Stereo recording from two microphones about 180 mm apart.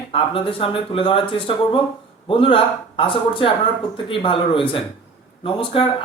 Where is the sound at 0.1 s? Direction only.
30° left (ahead or behind).